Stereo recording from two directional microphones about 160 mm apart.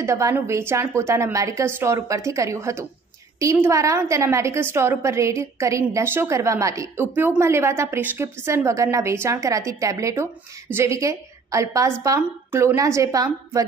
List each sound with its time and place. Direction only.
0.0 s a woman's voice: 20° right (ahead or behind)